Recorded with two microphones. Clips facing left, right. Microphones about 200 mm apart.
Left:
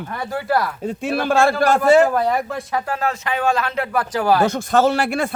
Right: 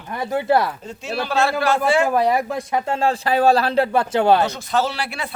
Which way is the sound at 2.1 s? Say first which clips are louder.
Right 1 dB; 10° right (ahead or behind).